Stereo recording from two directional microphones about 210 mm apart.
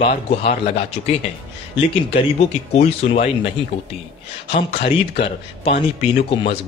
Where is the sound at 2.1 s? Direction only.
30° left (ahead or behind).